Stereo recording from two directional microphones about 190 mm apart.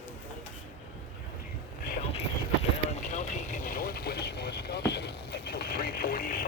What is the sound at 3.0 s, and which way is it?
Vehicle, 40° left (ahead or behind).